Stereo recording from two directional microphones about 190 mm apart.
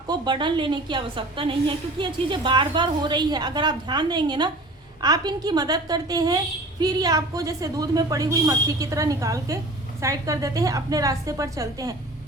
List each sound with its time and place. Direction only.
0.1 s a woman's voice: 25° right (ahead or behind)